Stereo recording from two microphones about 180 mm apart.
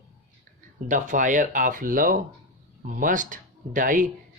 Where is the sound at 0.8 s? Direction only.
45° right (ahead or behind).